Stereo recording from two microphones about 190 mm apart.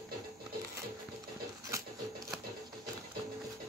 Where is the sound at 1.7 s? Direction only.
15° right (ahead or behind).